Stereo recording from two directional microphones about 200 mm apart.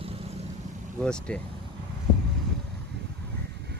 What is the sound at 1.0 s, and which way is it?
Speech, 5° left (ahead or behind).